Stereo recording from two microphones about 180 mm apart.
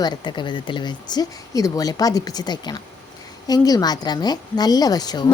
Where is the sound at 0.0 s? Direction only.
25° left (ahead or behind).